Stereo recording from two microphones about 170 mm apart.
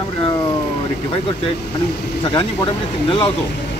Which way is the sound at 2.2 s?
25° left (ahead or behind).